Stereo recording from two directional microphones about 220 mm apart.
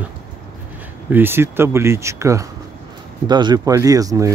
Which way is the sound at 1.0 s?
10° right (ahead or behind).